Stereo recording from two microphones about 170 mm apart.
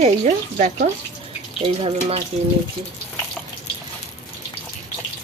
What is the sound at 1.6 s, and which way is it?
Speech, 30° right (ahead or behind).